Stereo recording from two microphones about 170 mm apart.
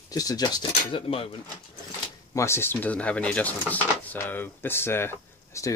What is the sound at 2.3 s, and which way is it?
Speech, 15° left (ahead or behind).